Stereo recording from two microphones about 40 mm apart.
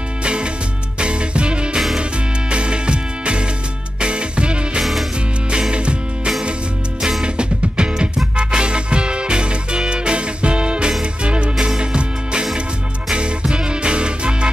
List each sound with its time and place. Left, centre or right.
0.2 s music: right
7.0 s music: centre
7.2 s music: right